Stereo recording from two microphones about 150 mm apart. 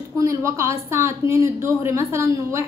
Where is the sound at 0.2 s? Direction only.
20° right (ahead or behind).